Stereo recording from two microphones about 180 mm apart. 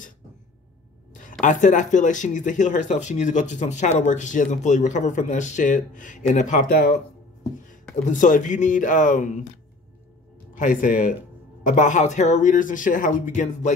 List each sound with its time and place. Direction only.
1.4 s speech: 45° left (ahead or behind)
10.5 s speech: 45° left (ahead or behind)